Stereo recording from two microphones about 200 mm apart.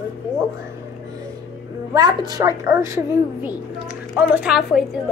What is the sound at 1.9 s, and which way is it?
Speech, 20° right (ahead or behind).